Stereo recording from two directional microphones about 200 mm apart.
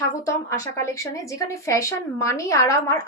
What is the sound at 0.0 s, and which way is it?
A woman's voice, 15° left (ahead or behind).